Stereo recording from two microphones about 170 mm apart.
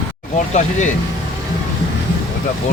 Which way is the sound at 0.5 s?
45° left (ahead or behind).